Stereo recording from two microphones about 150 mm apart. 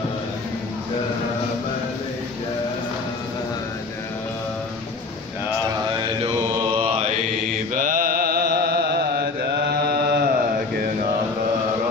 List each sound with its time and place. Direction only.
6.6 s mantra: 40° right (ahead or behind)
7.7 s mantra: 65° right (ahead or behind); by 10.3 s 90° right